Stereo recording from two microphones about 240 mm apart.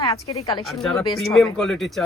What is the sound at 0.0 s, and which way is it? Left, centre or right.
Speech, left.